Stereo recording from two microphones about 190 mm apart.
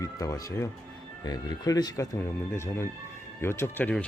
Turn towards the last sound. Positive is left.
turn(degrees=10)  # may be behind; listen again after turning